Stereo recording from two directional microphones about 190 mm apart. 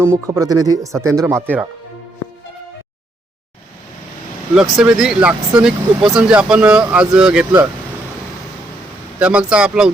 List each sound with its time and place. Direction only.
0.0 s speech: 15° right (ahead or behind)
4.5 s speech: 5° right (ahead or behind)
9.1 s speech: 5° right (ahead or behind)